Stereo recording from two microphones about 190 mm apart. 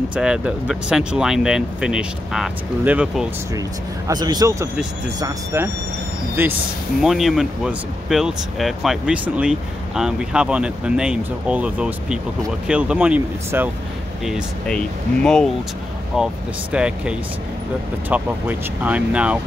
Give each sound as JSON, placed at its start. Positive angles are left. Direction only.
{"t": 0.1, "sound": "speech", "side_deg": -5}
{"t": 4.1, "sound": "a man's voice", "side_deg": -20}
{"t": 14.2, "sound": "speech", "side_deg": 0}